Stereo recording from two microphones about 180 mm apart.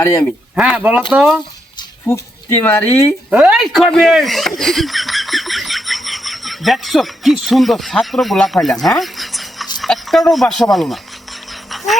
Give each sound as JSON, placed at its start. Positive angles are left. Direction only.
{"t": 0.0, "sound": "speech", "side_deg": 15}
{"t": 0.5, "sound": "speech", "side_deg": -5}
{"t": 2.0, "sound": "speech", "side_deg": 10}
{"t": 3.2, "sound": "speech", "side_deg": -5}
{"t": 8.6, "sound": "a sound", "side_deg": 0}
{"t": 9.8, "sound": "speech", "side_deg": 0}